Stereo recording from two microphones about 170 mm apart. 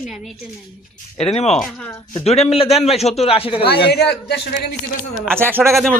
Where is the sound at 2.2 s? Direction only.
40° left (ahead or behind).